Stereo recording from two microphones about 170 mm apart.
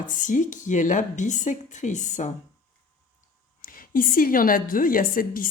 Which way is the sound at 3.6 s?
55° left (ahead or behind).